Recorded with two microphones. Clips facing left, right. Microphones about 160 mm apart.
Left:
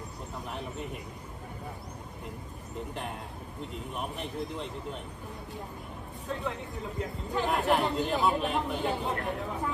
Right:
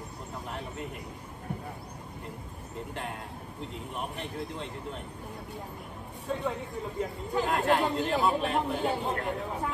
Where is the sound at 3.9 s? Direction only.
Centre (ahead or behind).